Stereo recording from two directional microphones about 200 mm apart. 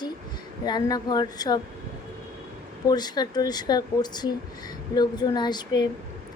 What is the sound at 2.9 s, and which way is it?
A woman's voice, 20° left (ahead or behind).